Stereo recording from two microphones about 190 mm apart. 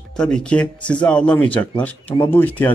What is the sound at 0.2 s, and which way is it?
Speech, 5° left (ahead or behind).